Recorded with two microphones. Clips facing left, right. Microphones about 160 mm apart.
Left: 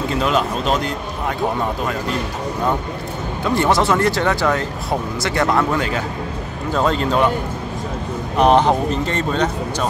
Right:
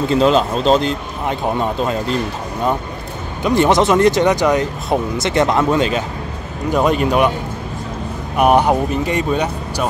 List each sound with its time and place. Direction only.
0.1 s speech: 30° right (ahead or behind)
3.4 s speech: 20° right (ahead or behind)
8.4 s speech: 10° right (ahead or behind)